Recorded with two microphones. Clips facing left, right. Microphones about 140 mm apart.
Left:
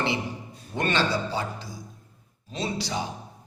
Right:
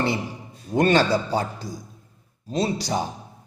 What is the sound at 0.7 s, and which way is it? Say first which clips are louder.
Speech: right 7 dB; 40° right (ahead or behind).